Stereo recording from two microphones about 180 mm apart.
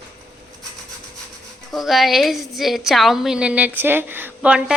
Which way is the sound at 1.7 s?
Centre (ahead or behind).